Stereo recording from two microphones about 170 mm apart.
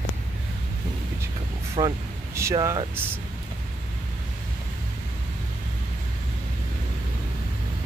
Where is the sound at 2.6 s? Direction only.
15° right (ahead or behind).